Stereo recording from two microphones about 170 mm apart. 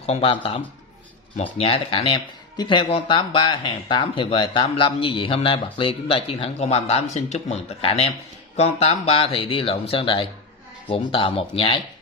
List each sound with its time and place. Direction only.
0.0 s speech: 35° left (ahead or behind)